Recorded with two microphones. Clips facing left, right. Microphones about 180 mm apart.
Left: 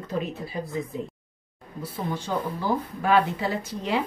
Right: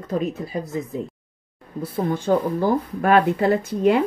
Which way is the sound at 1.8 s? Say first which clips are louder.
Right 7 dB; 55° right (ahead or behind).